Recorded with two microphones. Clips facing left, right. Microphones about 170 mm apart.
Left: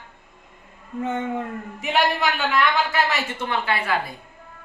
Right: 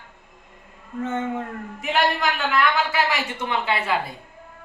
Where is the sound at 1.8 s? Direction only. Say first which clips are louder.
Even; centre (ahead or behind); by 4.0 s 20° right (ahead or behind).